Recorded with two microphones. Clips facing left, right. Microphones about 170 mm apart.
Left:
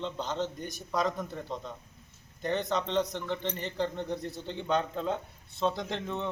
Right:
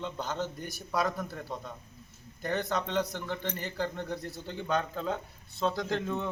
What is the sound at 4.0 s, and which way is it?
Speech, 25° left (ahead or behind).